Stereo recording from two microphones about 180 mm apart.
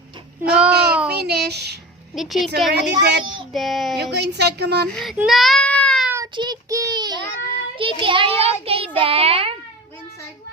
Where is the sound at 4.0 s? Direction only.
70° right (ahead or behind).